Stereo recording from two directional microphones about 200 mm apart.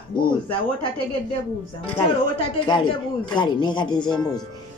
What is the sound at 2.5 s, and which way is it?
A woman's voice, 25° left (ahead or behind).